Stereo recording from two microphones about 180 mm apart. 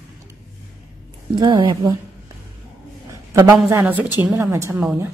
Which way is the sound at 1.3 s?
25° right (ahead or behind).